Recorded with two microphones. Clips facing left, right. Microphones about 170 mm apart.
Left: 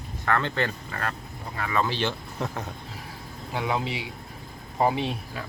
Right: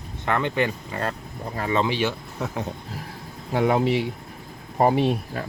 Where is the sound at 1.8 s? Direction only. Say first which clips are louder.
Right 3 dB; 10° right (ahead or behind).